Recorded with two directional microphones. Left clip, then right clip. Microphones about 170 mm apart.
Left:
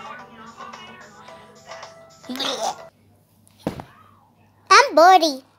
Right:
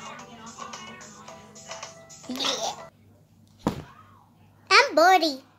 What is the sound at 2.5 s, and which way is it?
Speech, 25° left (ahead or behind).